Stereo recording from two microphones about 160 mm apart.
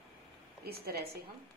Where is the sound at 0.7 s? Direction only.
85° right.